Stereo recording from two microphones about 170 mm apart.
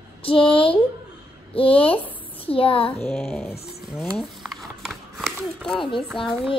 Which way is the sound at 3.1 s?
Centre (ahead or behind).